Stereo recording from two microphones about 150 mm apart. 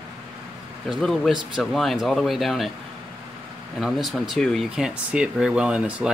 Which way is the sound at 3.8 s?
Centre (ahead or behind).